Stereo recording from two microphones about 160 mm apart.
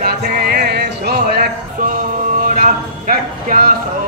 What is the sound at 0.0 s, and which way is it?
Music, 70° right (ahead or behind).